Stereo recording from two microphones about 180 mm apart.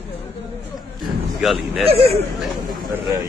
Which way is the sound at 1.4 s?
Centre (ahead or behind).